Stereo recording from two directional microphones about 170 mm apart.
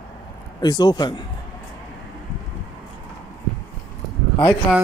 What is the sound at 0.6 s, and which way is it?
Speech, 25° left (ahead or behind).